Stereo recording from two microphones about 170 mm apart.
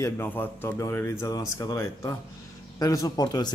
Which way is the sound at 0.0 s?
10° left (ahead or behind).